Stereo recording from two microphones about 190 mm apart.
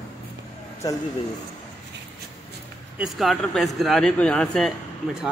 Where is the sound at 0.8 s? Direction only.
20° left (ahead or behind).